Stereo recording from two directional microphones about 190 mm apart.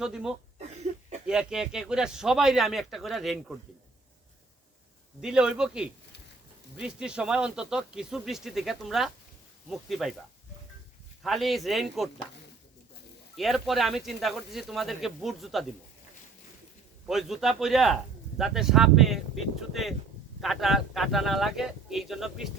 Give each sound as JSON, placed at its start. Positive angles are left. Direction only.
{"t": 0.0, "sound": "speech", "side_deg": -5}
{"t": 0.9, "sound": "a sound", "side_deg": -40}
{"t": 1.3, "sound": "speech", "side_deg": -5}
{"t": 5.2, "sound": "speech", "side_deg": -5}
{"t": 11.2, "sound": "speech", "side_deg": 0}
{"t": 13.3, "sound": "speech", "side_deg": 0}
{"t": 17.1, "sound": "speech", "side_deg": 0}